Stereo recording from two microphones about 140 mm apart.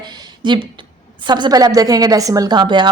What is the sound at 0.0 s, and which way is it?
A woman's voice, 30° right (ahead or behind).